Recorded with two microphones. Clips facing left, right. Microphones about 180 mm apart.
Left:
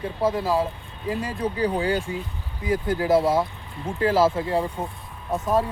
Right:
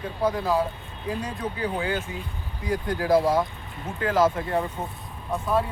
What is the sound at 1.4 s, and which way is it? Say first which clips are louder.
Speech: left 8 dB; 35° left (ahead or behind).